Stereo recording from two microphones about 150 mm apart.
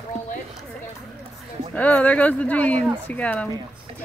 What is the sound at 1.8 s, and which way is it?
Speech, 10° left (ahead or behind).